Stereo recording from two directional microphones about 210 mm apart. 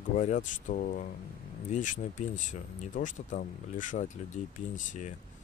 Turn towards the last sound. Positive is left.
turn(degrees=35)  # may be behind; listen again after turning